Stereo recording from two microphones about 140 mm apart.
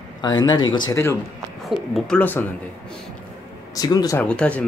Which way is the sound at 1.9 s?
5° left (ahead or behind).